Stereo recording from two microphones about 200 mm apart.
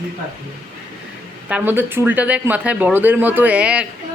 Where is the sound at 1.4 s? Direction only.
10° right (ahead or behind).